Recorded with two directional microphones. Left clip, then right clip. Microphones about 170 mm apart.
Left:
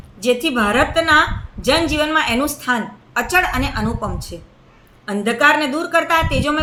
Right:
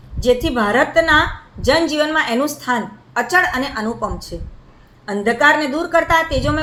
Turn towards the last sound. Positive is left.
turn(degrees=10)  # may be behind; listen again after turning